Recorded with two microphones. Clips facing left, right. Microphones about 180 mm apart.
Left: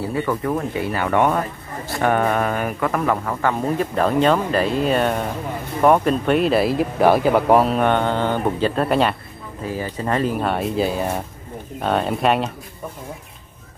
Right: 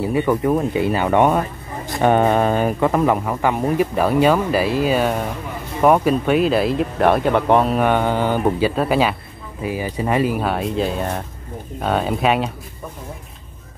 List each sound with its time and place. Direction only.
0.0 s speech: 20° right (ahead or behind); by 12.4 s centre (ahead or behind)